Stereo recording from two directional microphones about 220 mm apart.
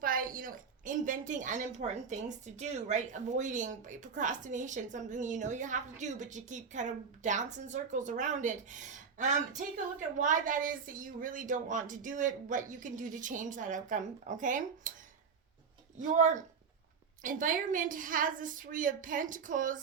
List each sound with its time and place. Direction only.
0.0 s a woman's voice: 40° right (ahead or behind)
16.0 s a woman's voice: 35° right (ahead or behind)